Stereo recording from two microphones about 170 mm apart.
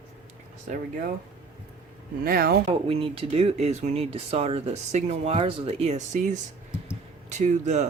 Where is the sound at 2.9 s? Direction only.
35° right (ahead or behind).